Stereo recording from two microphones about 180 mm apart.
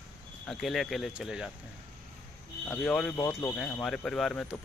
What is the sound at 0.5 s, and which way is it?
Speech, centre (ahead or behind).